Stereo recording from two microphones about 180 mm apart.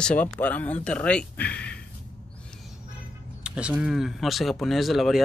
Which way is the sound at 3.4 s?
5° right (ahead or behind).